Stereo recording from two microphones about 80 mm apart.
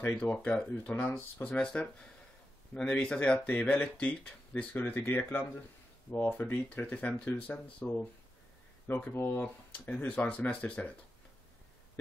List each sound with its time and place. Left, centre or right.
0.2 s speech: centre
8.8 s speech: left